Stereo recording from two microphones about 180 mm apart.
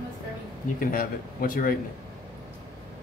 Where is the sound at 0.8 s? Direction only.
50° left (ahead or behind).